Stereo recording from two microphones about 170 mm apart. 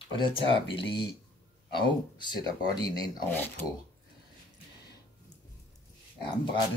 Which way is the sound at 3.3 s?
10° left (ahead or behind).